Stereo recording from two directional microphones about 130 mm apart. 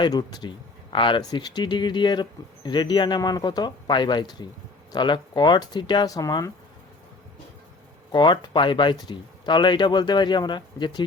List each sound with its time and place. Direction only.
0.0 s speech: 30° left (ahead or behind)
8.1 s speech: 35° left (ahead or behind)